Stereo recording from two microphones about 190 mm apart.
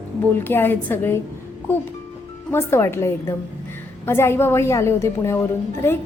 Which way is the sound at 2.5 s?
15° left (ahead or behind).